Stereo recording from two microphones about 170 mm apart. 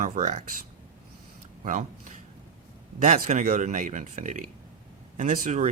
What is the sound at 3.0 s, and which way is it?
Speech, 50° right (ahead or behind).